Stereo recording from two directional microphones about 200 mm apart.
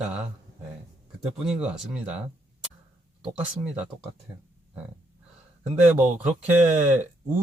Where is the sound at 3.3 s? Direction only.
5° right (ahead or behind).